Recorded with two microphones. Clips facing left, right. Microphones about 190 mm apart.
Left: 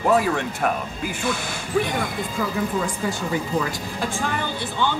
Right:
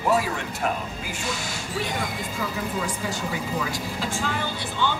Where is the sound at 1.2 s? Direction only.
55° left (ahead or behind).